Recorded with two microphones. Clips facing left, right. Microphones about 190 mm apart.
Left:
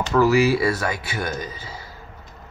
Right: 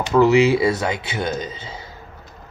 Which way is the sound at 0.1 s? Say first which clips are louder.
Right 3 dB; 20° right (ahead or behind).